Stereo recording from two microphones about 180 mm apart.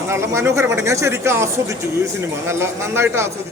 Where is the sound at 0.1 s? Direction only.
15° right (ahead or behind).